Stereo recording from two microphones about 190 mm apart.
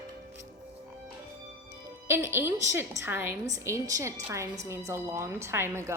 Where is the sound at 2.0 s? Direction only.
15° right (ahead or behind).